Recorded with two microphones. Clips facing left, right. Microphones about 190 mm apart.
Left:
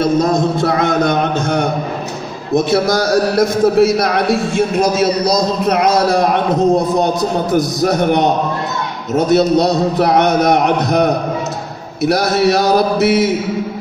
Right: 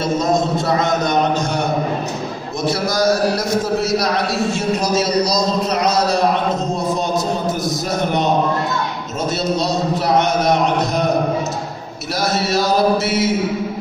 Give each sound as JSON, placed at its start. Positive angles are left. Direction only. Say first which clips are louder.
{"t": 0.4, "sound": "music", "louder": "left 3 dB", "side_deg": 60}
{"t": 2.5, "sound": "a man's voice", "louder": "left 7 dB", "side_deg": 60}
{"t": 7.5, "sound": "a man's voice", "louder": "left 7 dB", "side_deg": 65}
{"t": 13.0, "sound": "a man's voice", "louder": "left 6 dB", "side_deg": 65}